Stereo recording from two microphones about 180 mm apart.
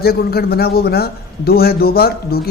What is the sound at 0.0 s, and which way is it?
Speech, 60° left (ahead or behind).